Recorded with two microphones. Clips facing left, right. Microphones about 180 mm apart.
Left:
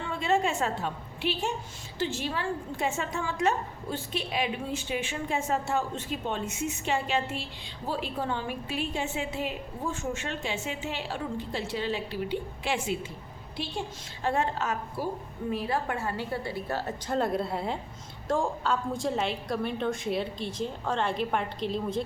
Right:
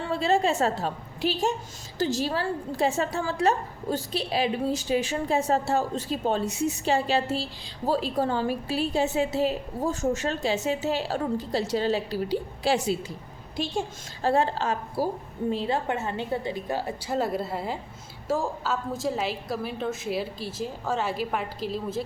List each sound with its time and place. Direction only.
0.0 s a woman's voice: 35° right (ahead or behind); by 22.0 s 5° right (ahead or behind)